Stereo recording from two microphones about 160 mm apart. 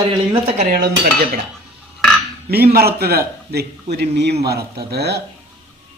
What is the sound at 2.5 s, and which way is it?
A man's voice, 75° right (ahead or behind).